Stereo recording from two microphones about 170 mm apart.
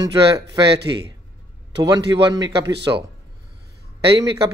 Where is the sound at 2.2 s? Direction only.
20° right (ahead or behind).